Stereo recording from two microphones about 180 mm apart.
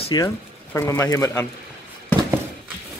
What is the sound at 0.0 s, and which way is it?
Speech, 25° left (ahead or behind).